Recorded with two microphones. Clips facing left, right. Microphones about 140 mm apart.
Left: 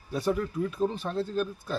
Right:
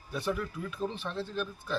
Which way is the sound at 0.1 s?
40° left (ahead or behind).